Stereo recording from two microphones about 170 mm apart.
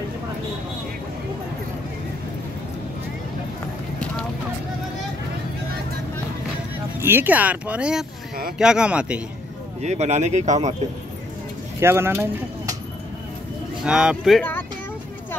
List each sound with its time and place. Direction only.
7.0 s speech: 10° right (ahead or behind)
9.8 s speech: 40° right (ahead or behind)
11.8 s speech: 15° right (ahead or behind)
13.8 s speech: 5° right (ahead or behind)